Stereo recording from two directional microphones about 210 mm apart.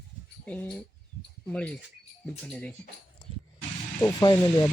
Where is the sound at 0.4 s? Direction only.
5° left (ahead or behind).